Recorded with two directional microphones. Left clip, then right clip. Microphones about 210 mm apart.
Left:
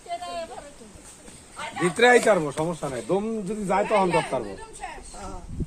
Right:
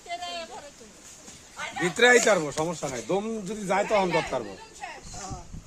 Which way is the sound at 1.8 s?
Centre (ahead or behind).